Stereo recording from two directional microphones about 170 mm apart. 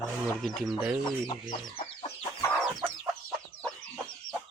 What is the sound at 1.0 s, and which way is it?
Speech, 25° left (ahead or behind).